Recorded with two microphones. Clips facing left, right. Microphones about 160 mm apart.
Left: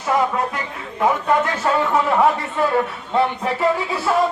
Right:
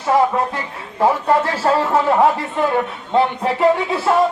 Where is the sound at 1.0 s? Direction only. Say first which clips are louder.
Right 2 dB; 30° right (ahead or behind).